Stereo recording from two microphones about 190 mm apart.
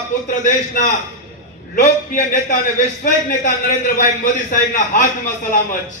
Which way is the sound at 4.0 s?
45° left (ahead or behind).